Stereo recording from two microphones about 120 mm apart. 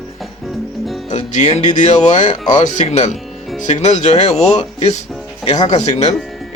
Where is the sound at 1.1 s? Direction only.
80° left.